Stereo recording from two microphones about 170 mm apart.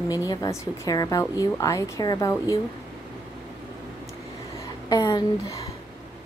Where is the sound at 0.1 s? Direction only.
20° left (ahead or behind).